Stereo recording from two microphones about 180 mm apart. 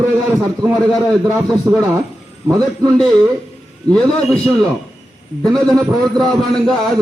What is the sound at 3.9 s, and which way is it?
Speech, 5° left (ahead or behind).